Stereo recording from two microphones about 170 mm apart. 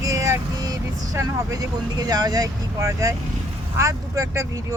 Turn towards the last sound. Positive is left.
turn(degrees=-20)  # may be behind; listen again after turning